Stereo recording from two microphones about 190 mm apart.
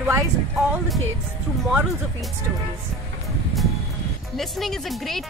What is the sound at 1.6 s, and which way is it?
Speech, centre (ahead or behind).